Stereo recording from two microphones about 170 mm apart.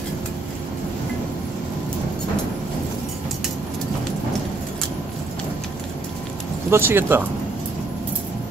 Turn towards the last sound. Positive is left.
turn(degrees=-15)  # may be behind; listen again after turning